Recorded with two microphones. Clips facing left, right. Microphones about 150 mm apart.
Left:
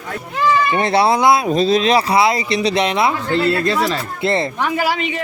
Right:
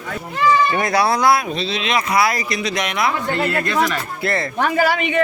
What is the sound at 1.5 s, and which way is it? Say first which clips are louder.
Speech: left 8 dB; 45° left (ahead or behind).